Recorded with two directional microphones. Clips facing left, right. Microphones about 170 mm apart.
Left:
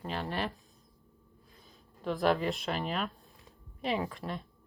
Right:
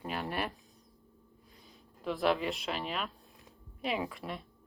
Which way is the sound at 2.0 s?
Centre (ahead or behind).